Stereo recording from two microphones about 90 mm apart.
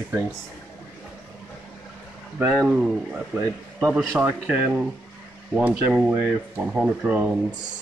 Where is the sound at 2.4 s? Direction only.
35° right (ahead or behind).